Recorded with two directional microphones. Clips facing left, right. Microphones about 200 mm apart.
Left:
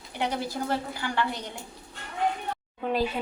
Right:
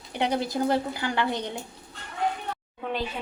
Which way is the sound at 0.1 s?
20° right (ahead or behind).